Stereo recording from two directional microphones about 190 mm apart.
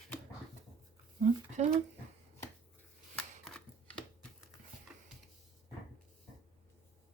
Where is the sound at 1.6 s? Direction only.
35° right (ahead or behind).